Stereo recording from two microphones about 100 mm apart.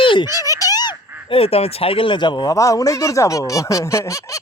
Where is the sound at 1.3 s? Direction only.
85° left; by 2.5 s 50° left (ahead or behind).